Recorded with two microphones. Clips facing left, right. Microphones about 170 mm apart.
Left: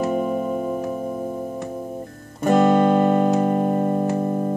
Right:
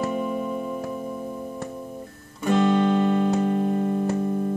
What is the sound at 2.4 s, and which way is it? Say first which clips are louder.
Music: left 4 dB; 50° left (ahead or behind).